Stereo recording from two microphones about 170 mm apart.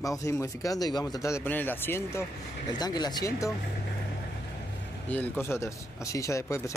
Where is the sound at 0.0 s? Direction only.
20° left (ahead or behind).